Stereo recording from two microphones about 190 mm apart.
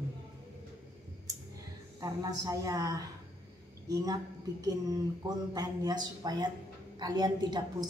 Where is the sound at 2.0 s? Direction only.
20° right (ahead or behind).